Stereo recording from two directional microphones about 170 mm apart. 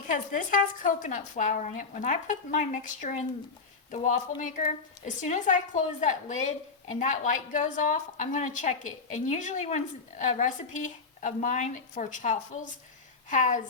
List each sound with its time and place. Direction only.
0.1 s a woman's voice: 50° left (ahead or behind)
4.4 s a woman's voice: 50° left (ahead or behind)